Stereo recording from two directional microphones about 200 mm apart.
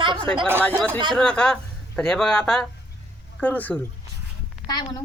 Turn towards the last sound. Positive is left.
turn(degrees=20)  # may be behind; listen again after turning